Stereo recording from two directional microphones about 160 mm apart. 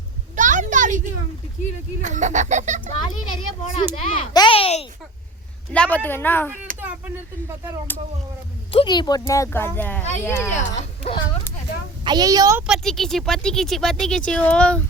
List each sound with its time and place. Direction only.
0.3 s a sound: 50° right (ahead or behind)
2.0 s speech: 50° right (ahead or behind)
3.0 s a child's voice: 30° left (ahead or behind)
5.7 s a woman's voice: 10° left (ahead or behind)
6.7 s a sound: 60° right (ahead or behind)
8.7 s a woman's voice: 30° left (ahead or behind); by 10.8 s 15° left (ahead or behind)
12.0 s a woman's voice: 25° right (ahead or behind)
12.6 s speech: centre (ahead or behind)